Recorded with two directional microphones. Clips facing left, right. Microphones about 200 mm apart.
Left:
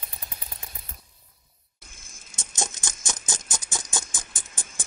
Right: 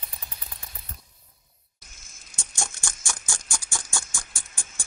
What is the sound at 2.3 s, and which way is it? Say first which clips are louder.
Rattle: left 3 dB; 20° left (ahead or behind).